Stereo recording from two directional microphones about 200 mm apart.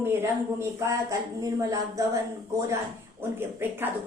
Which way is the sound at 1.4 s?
15° right (ahead or behind).